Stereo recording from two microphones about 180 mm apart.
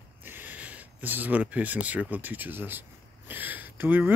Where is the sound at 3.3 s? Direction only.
10° right (ahead or behind).